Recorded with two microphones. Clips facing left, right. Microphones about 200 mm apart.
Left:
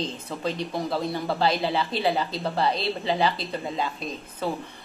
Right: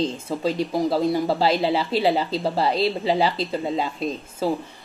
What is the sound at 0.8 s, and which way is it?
A woman's voice, 25° right (ahead or behind).